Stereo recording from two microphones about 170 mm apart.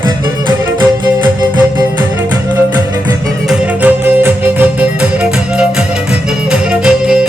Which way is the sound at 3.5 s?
10° right (ahead or behind).